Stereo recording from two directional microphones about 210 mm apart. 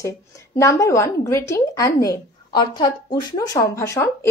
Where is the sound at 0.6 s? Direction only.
15° left (ahead or behind).